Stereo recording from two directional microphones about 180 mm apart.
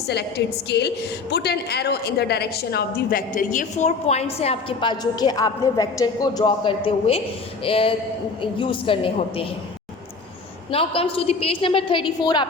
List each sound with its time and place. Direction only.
0.1 s a woman's voice: 70° left (ahead or behind); by 9.5 s 30° left (ahead or behind)
10.7 s a woman's voice: 30° left (ahead or behind)